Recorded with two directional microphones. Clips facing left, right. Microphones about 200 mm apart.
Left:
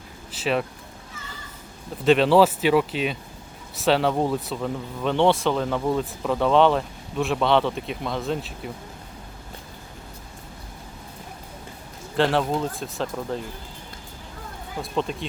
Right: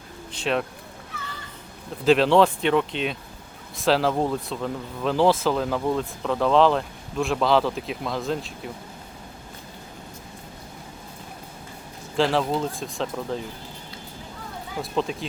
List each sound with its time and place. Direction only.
0.3 s speech: 5° left (ahead or behind)
1.1 s children playing: 65° right (ahead or behind)
2.0 s speech: centre (ahead or behind)
12.1 s speech: centre (ahead or behind)
14.8 s speech: centre (ahead or behind)